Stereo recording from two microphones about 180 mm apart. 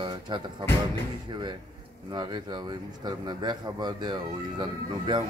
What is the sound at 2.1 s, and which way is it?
Speech, 25° right (ahead or behind).